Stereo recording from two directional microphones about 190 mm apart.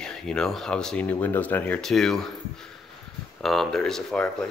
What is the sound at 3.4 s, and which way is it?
Speech, centre (ahead or behind).